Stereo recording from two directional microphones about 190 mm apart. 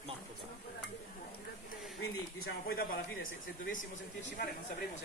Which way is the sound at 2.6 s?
50° left (ahead or behind).